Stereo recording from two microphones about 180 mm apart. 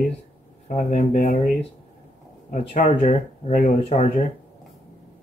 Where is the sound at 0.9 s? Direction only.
45° left (ahead or behind).